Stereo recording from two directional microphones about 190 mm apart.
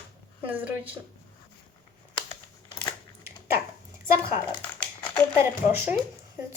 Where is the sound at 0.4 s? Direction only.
10° right (ahead or behind).